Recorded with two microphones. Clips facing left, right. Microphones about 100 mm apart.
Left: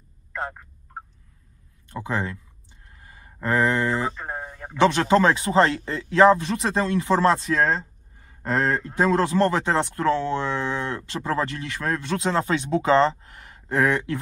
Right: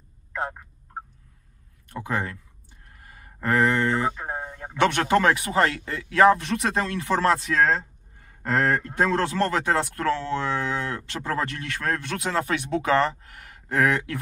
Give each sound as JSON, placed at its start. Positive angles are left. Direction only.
{"t": 0.3, "sound": "speech", "side_deg": -10}
{"t": 1.9, "sound": "speech", "side_deg": 25}
{"t": 3.4, "sound": "speech", "side_deg": 25}
{"t": 4.1, "sound": "a sound", "side_deg": -5}
{"t": 4.7, "sound": "speech", "side_deg": 25}